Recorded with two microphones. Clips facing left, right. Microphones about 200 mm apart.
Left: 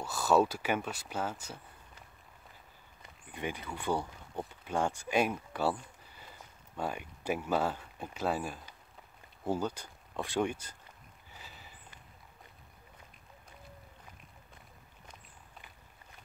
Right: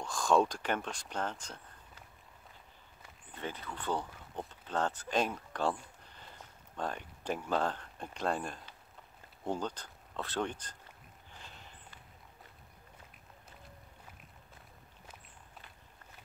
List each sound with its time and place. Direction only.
0.0 s speech: 5° left (ahead or behind)
3.3 s speech: 15° left (ahead or behind)
11.2 s a sound: 5° left (ahead or behind)